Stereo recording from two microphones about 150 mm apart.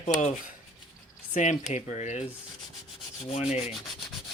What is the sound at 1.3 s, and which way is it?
Speech, 55° left (ahead or behind).